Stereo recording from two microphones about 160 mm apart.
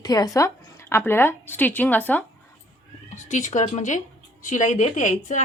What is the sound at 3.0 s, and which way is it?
A woman's voice, 50° left (ahead or behind).